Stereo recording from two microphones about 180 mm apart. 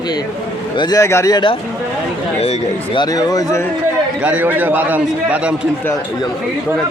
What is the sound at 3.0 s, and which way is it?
Speech, 20° left (ahead or behind).